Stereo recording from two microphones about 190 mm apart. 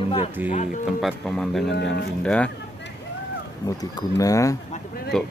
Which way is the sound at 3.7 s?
20° left (ahead or behind).